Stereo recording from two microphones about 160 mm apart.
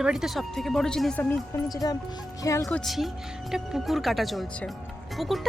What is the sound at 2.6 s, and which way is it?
Speech, centre (ahead or behind).